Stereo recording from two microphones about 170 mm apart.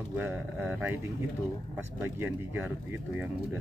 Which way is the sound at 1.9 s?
10° right (ahead or behind).